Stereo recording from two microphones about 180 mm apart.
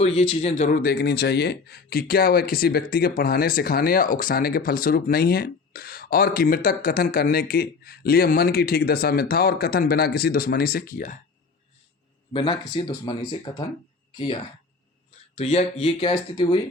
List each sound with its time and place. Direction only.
0.0 s speech: 35° left (ahead or behind)
0.7 s speech: 55° left (ahead or behind)
12.3 s speech: 30° left (ahead or behind)
15.4 s speech: 35° left (ahead or behind)